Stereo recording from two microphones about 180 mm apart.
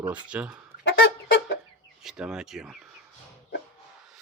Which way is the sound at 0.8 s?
85° left.